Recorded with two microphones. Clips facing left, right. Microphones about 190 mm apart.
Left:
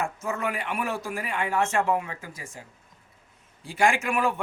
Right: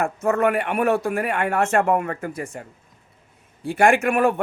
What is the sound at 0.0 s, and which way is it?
Speech, 60° right (ahead or behind).